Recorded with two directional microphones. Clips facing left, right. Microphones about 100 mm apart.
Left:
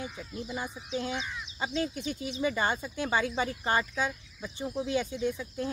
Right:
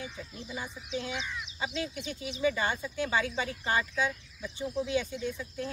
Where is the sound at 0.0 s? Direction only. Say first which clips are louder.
Left 3 dB; 40° left (ahead or behind).